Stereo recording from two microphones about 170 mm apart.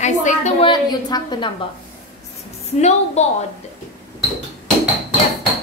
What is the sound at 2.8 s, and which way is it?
Speech, 40° left (ahead or behind).